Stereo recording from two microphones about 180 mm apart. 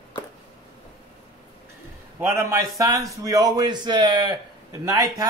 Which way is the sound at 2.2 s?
15° right (ahead or behind).